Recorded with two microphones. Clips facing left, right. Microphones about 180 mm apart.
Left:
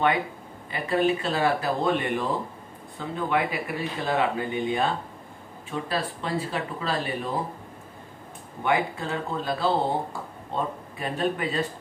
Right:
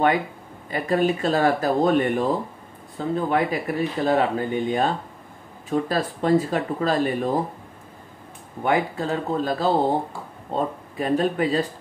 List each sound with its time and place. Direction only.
0.7 s speech: 45° right (ahead or behind)
8.6 s speech: 40° right (ahead or behind)